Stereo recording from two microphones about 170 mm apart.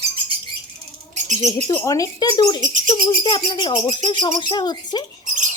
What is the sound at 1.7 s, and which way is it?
Speech, 20° left (ahead or behind).